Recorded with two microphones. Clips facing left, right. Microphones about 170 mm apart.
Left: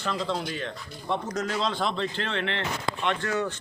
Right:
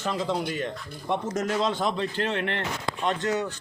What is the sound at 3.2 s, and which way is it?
Speech, 20° right (ahead or behind).